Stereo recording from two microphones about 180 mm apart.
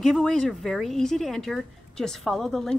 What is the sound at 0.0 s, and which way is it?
A woman's voice, centre (ahead or behind).